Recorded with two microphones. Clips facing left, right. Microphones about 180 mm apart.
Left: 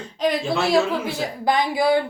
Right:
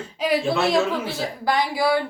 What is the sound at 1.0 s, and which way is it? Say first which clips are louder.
Speech: left 2 dB; 20° left (ahead or behind).